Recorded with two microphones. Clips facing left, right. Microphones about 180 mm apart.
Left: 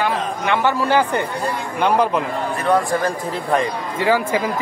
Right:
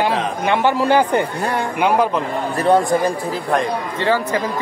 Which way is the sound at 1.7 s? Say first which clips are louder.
Even; 5° right (ahead or behind).